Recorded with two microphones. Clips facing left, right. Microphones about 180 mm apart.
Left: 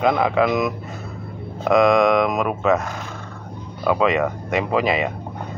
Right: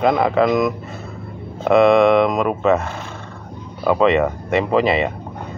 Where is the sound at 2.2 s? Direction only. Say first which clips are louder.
Right 3 dB; 5° left (ahead or behind).